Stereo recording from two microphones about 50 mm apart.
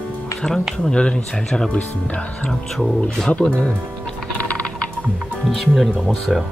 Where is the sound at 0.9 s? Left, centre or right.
Centre.